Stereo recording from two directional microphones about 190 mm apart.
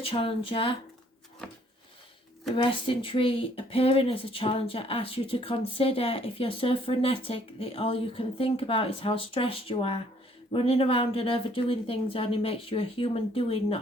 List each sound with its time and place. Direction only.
0.0 s speech: 30° left (ahead or behind)
2.6 s speech: 25° left (ahead or behind)